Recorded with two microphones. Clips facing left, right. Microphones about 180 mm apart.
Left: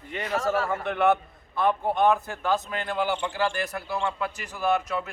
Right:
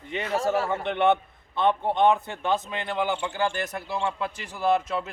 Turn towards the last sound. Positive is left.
turn(degrees=-25)  # may be behind; listen again after turning